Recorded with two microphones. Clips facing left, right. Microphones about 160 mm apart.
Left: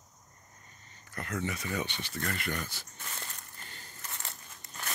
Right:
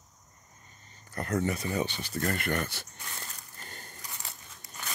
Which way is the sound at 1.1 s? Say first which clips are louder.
Right 6 dB; 40° right (ahead or behind).